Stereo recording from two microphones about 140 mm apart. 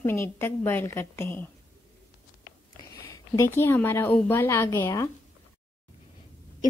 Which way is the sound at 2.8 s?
20° left (ahead or behind).